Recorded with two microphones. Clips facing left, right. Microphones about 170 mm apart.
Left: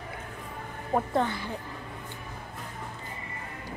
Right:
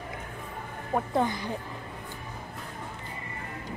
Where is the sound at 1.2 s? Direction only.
15° right (ahead or behind).